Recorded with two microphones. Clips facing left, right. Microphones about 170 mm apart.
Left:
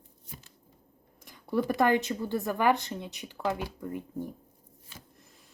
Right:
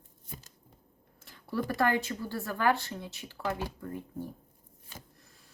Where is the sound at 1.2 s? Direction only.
15° left (ahead or behind).